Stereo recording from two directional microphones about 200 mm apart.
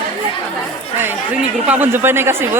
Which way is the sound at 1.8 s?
10° right (ahead or behind).